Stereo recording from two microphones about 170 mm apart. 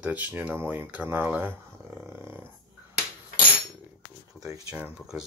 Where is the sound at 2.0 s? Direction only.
15° right (ahead or behind).